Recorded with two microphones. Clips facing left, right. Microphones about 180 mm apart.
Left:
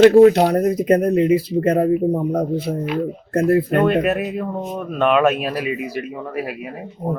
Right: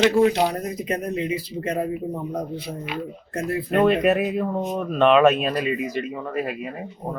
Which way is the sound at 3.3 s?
60° left (ahead or behind).